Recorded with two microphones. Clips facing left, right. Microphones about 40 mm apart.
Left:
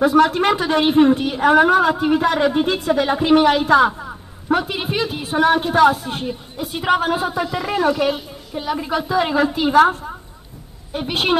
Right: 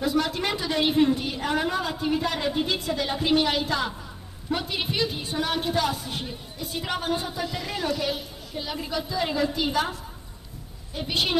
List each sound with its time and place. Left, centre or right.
0.0 s a woman's voice: left
7.4 s speech: left
8.0 s a woman's voice: left